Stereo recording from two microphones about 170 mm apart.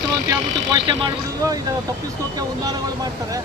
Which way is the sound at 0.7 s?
25° right (ahead or behind).